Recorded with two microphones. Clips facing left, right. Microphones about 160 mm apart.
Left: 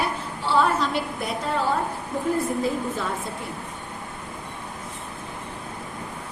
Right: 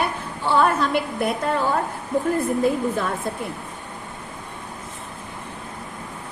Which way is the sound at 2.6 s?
55° right (ahead or behind).